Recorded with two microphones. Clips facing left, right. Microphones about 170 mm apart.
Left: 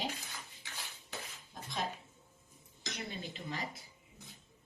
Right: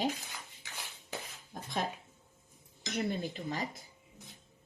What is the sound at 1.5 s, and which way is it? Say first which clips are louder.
Speech: right 4 dB; 50° right (ahead or behind).